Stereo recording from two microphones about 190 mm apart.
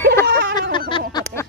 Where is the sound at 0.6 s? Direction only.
25° left (ahead or behind).